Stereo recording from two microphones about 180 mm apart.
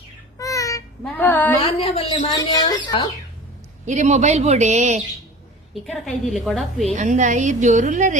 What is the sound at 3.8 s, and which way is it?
A woman's voice, 40° right (ahead or behind).